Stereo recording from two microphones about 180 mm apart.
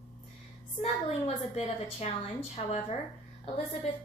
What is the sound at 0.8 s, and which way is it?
A woman's voice, 35° left (ahead or behind).